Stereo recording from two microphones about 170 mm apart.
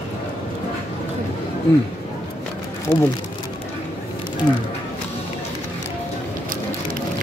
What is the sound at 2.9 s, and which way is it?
Speech, 10° left (ahead or behind).